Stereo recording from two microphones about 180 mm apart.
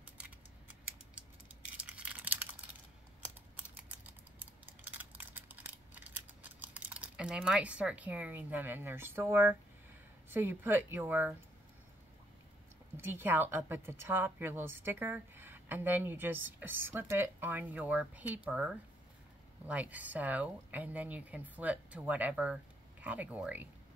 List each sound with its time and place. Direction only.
0.0 s a sound: 10° right (ahead or behind)
1.8 s crumpling: 5° right (ahead or behind)
3.5 s typing: 10° right (ahead or behind)
10.3 s a woman's voice: 10° right (ahead or behind)
12.9 s a woman's voice: 10° right (ahead or behind)